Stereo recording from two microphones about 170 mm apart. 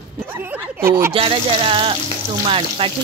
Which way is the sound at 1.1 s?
30° right (ahead or behind).